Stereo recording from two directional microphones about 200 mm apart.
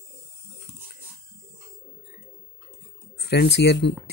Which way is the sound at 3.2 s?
55° left (ahead or behind).